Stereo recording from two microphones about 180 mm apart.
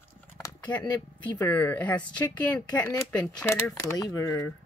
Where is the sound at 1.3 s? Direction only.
10° left (ahead or behind).